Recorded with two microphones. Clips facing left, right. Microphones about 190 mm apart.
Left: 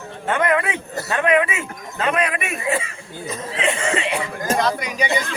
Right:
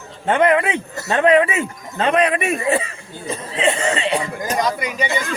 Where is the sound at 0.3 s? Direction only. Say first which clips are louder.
Right 4 dB; 25° right (ahead or behind).